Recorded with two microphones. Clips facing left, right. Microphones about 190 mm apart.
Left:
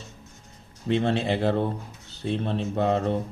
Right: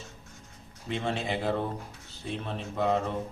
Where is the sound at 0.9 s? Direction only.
30° left (ahead or behind).